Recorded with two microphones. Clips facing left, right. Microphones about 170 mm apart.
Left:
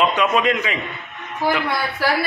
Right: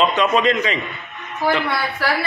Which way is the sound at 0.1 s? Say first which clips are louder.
Right 1 dB; 10° left (ahead or behind).